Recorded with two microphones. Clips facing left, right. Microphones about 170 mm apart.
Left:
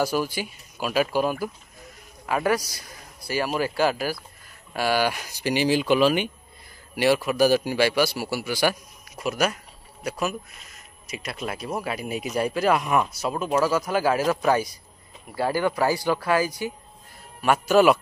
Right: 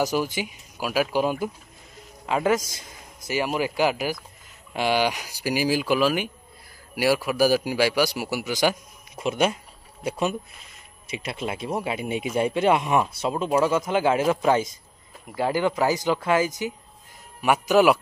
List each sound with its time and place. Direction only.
0.0 s a man's voice: 20° right (ahead or behind)